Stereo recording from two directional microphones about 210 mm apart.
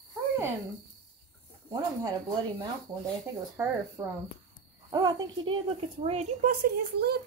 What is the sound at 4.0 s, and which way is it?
Speech, 20° right (ahead or behind).